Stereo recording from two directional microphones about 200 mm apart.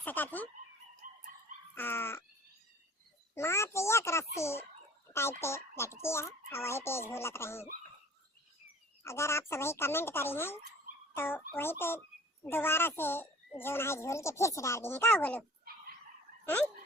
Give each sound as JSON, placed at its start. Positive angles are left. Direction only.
{"t": 0.0, "sound": "speech", "side_deg": 10}
{"t": 1.0, "sound": "dog", "side_deg": -40}
{"t": 1.7, "sound": "dog", "side_deg": 10}
{"t": 3.3, "sound": "fowl", "side_deg": 15}
{"t": 5.1, "sound": "a child's voice", "side_deg": 15}
{"t": 9.0, "sound": "a child's voice", "side_deg": 15}